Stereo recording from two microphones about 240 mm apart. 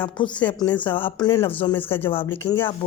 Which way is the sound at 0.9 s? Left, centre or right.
Left.